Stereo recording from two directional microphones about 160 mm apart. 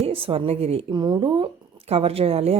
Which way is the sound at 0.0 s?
35° right (ahead or behind).